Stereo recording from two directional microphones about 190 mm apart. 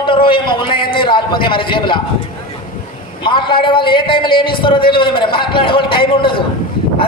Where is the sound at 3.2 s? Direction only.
25° left (ahead or behind).